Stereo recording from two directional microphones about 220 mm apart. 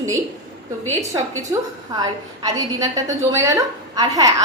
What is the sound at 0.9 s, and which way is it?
A woman's voice, 15° right (ahead or behind).